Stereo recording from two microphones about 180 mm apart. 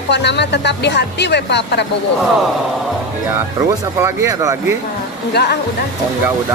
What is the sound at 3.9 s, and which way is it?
Speech, 15° right (ahead or behind).